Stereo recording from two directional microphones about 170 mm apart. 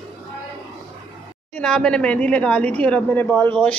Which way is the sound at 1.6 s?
5° left (ahead or behind).